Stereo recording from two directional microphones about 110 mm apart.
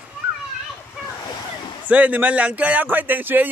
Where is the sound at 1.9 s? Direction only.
15° right (ahead or behind).